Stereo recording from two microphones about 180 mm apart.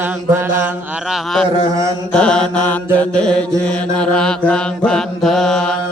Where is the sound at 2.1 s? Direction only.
5° left (ahead or behind).